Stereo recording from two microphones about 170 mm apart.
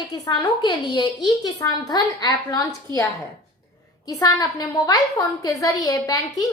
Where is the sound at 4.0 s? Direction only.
20° left (ahead or behind).